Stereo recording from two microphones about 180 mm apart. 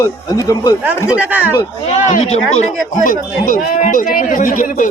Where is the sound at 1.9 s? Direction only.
40° left (ahead or behind).